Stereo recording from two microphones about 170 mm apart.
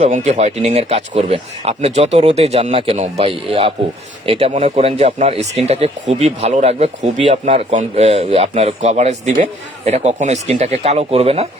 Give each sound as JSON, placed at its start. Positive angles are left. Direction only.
{"t": 0.0, "sound": "speech", "side_deg": -40}